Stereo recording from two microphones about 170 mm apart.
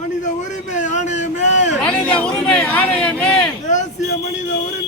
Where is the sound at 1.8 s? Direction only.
5° left (ahead or behind).